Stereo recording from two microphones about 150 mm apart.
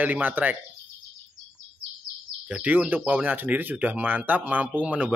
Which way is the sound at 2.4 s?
10° right (ahead or behind).